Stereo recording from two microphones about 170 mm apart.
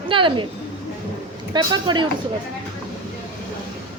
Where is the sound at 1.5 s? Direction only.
25° right (ahead or behind).